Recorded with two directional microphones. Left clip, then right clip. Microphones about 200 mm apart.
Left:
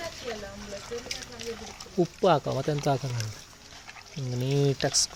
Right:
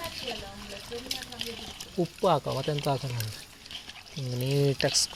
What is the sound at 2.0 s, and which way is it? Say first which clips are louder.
Speech: left 2 dB; 15° left (ahead or behind).